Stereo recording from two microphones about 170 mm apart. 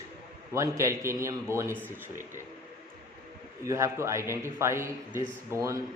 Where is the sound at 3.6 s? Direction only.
20° right (ahead or behind).